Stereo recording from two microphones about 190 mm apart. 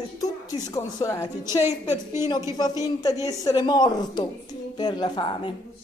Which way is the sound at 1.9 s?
15° right (ahead or behind).